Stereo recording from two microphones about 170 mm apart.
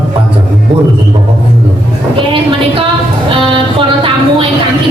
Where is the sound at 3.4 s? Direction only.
30° right (ahead or behind).